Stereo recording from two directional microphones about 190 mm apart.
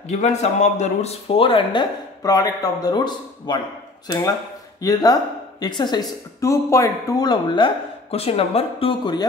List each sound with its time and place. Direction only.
0.1 s speech: 35° left (ahead or behind)
4.7 s speech: 20° left (ahead or behind)